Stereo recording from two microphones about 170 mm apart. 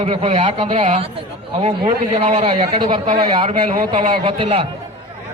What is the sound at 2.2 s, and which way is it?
A man's voice, 35° right (ahead or behind).